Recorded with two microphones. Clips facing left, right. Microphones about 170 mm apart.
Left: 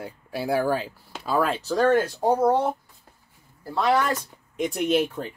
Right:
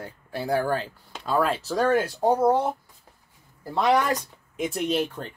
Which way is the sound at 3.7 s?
20° right (ahead or behind).